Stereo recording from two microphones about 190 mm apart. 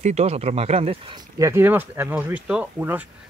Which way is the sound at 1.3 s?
15° right (ahead or behind).